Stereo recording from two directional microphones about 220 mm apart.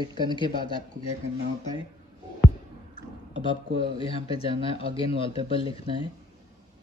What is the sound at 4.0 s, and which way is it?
Speech, 25° left (ahead or behind).